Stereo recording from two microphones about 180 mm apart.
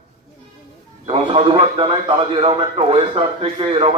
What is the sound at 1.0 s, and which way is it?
A man's voice, 30° right (ahead or behind).